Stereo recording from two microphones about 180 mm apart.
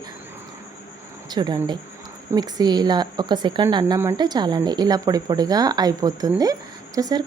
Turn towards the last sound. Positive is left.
turn(degrees=-20)  # may be behind; listen again after turning